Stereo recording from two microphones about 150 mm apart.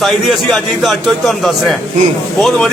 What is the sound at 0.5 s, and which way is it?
A man's voice, centre (ahead or behind).